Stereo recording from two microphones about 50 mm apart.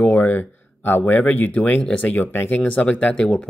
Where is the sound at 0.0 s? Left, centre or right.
Left.